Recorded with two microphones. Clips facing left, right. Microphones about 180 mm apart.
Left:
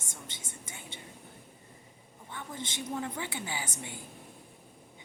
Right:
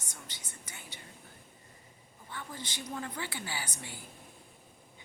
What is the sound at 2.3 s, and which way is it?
A woman's voice, 25° left (ahead or behind).